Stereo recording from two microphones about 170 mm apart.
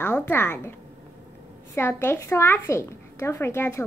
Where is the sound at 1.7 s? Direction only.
15° left (ahead or behind).